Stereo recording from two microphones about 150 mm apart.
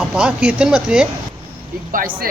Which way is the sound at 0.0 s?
5° right (ahead or behind).